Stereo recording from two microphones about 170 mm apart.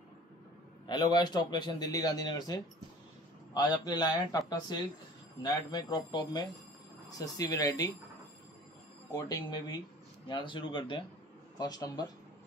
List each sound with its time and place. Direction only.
0.8 s a man's voice: 25° left (ahead or behind)
9.1 s a man's voice: 25° left (ahead or behind)